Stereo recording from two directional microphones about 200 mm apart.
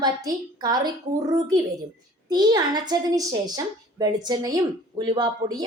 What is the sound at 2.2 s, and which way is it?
A woman's voice, 20° right (ahead or behind).